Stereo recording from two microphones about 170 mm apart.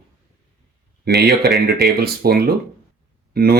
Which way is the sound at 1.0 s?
70° right (ahead or behind).